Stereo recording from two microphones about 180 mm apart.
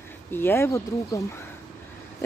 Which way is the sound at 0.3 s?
10° left (ahead or behind).